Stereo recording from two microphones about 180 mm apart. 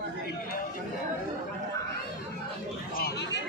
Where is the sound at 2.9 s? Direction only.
60° left (ahead or behind).